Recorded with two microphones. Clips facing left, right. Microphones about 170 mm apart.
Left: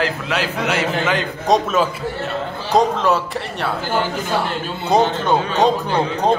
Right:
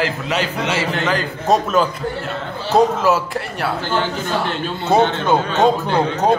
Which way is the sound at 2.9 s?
5° right (ahead or behind).